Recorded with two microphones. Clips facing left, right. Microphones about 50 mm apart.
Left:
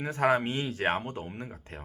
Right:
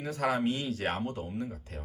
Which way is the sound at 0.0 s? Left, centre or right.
Left.